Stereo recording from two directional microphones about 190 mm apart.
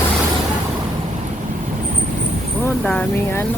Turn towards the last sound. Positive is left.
turn(degrees=5)  # may be behind; listen again after turning